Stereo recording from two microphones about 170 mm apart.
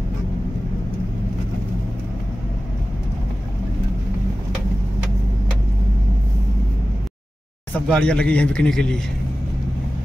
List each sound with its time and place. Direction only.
7.7 s speech: 5° left (ahead or behind)